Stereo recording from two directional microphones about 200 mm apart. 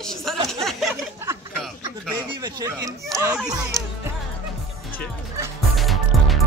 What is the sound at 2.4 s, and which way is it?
Speech, 20° right (ahead or behind).